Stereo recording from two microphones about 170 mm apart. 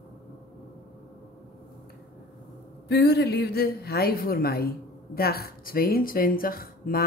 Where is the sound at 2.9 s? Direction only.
75° left (ahead or behind).